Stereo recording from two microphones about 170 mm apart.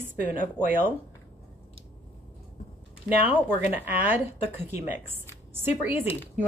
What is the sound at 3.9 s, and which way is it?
A woman's voice, 10° right (ahead or behind).